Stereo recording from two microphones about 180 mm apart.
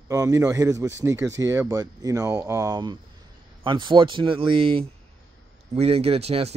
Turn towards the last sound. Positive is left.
turn(degrees=-35)  # may be behind; listen again after turning